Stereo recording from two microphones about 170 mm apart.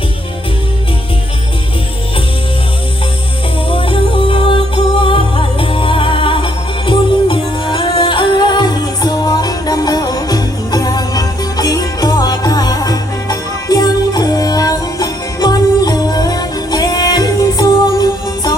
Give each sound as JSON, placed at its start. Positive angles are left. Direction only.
{"t": 3.7, "sound": "music", "side_deg": 30}